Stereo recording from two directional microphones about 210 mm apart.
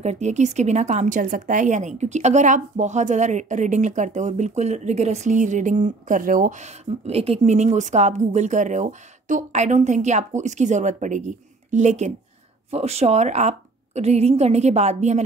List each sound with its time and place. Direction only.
0.0 s a woman's voice: 35° right (ahead or behind)